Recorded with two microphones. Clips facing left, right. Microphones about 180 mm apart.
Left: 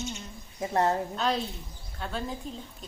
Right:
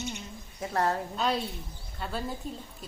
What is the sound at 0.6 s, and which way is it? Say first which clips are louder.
Speech: left 3 dB; 20° left (ahead or behind).